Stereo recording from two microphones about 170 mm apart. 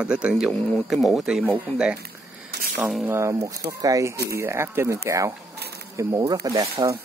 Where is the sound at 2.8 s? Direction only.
5° right (ahead or behind).